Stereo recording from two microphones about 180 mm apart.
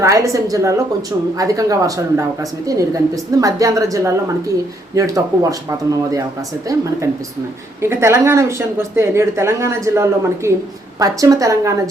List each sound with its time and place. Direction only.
0.0 s speech: 15° right (ahead or behind)
7.8 s speech: 15° right (ahead or behind)